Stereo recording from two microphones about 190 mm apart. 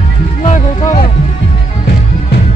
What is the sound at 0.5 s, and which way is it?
Music, 40° left (ahead or behind).